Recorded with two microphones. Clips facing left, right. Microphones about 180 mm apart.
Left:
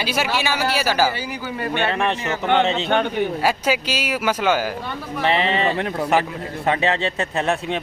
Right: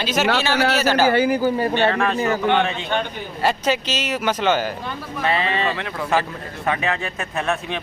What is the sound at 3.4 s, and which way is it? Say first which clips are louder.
Speech: even; 10° left (ahead or behind).